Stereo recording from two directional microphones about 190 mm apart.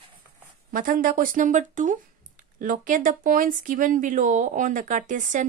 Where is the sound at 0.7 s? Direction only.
45° right (ahead or behind).